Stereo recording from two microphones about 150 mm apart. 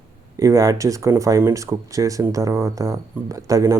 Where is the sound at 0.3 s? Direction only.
20° right (ahead or behind).